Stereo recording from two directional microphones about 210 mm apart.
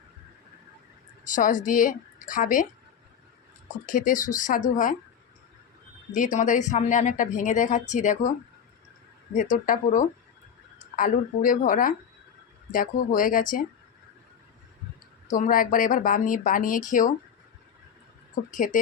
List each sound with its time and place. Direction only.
1.2 s a woman's voice: 40° left (ahead or behind)
3.8 s speech: 40° left (ahead or behind)
6.1 s speech: 35° left (ahead or behind)
9.3 s speech: 35° left (ahead or behind)
15.3 s speech: 40° left (ahead or behind)
18.5 s speech: 35° left (ahead or behind)